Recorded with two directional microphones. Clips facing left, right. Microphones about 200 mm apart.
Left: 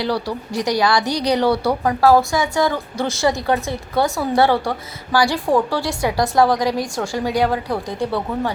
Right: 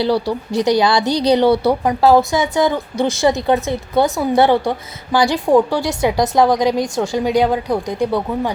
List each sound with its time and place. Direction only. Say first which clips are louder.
0.0 s a woman's voice: right 5 dB; 25° right (ahead or behind)